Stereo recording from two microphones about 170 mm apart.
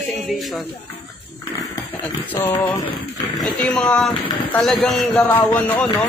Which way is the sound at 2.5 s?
25° left (ahead or behind).